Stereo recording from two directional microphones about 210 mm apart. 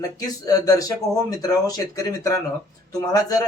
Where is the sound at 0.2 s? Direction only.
15° left (ahead or behind).